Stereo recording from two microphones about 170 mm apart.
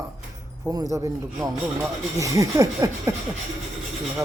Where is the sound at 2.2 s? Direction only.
20° right (ahead or behind).